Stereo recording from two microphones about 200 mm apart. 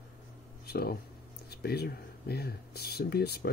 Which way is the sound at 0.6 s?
50° left (ahead or behind).